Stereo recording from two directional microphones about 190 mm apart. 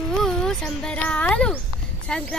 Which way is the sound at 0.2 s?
5° left (ahead or behind).